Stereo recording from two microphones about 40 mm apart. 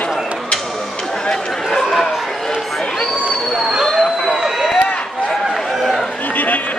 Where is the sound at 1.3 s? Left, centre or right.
Centre.